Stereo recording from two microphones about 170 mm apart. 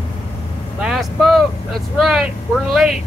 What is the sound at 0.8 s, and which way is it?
Vehicle, centre (ahead or behind).